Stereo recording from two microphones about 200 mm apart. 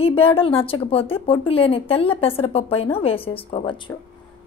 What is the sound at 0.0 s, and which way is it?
A woman's voice, 30° left (ahead or behind).